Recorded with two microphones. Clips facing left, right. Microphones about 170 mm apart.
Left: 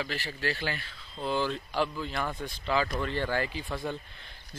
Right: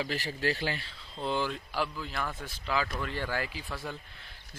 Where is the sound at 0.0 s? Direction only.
40° right (ahead or behind).